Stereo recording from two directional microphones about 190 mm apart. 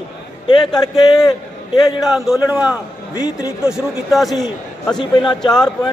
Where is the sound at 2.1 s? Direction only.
Centre (ahead or behind).